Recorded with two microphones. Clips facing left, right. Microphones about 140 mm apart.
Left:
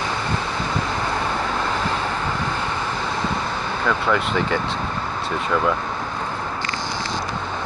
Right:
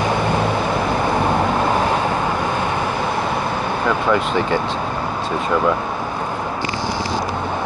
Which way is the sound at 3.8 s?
25° right (ahead or behind).